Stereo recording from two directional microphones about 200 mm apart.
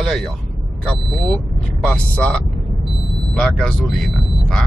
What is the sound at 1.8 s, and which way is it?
Speech, 5° left (ahead or behind).